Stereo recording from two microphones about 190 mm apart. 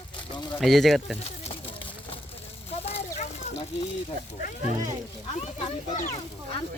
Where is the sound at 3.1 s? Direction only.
35° left (ahead or behind).